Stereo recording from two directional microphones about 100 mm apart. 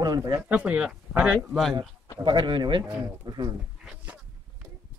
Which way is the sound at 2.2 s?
50° right (ahead or behind).